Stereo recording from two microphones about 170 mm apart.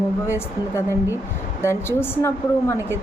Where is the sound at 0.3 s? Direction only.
15° left (ahead or behind).